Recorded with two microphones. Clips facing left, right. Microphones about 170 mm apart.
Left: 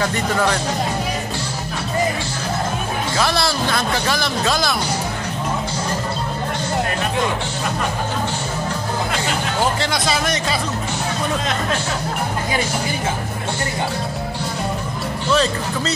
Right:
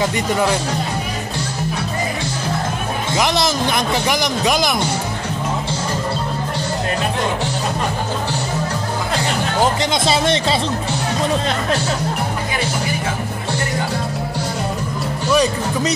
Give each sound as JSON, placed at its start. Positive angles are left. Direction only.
{"t": 0.0, "sound": "speech", "side_deg": -15}
{"t": 3.2, "sound": "speech", "side_deg": -20}
{"t": 9.6, "sound": "speech", "side_deg": -25}
{"t": 15.3, "sound": "speech", "side_deg": -15}